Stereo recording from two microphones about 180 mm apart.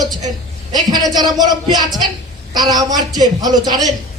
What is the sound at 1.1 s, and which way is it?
Speech, 25° right (ahead or behind).